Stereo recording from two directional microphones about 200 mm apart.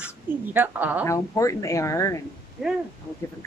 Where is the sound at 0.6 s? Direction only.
10° right (ahead or behind).